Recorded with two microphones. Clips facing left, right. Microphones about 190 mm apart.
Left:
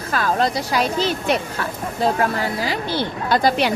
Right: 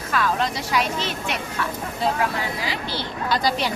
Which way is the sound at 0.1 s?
40° left (ahead or behind).